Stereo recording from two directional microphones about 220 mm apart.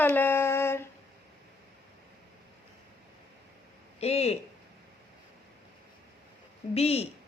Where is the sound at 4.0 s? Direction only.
25° left (ahead or behind).